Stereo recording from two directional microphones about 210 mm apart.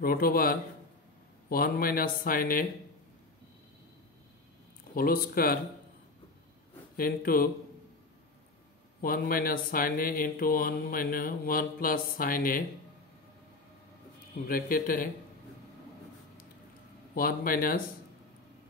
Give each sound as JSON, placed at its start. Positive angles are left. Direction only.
{"t": 0.0, "sound": "speech", "side_deg": 45}
{"t": 4.9, "sound": "speech", "side_deg": 45}
{"t": 7.0, "sound": "speech", "side_deg": 45}
{"t": 9.0, "sound": "speech", "side_deg": 45}
{"t": 14.5, "sound": "speech", "side_deg": 40}
{"t": 17.1, "sound": "speech", "side_deg": 40}